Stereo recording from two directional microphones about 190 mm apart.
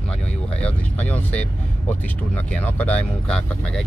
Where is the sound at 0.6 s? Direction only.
5° left (ahead or behind).